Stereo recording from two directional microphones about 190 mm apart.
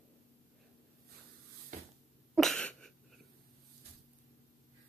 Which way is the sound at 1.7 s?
40° right (ahead or behind).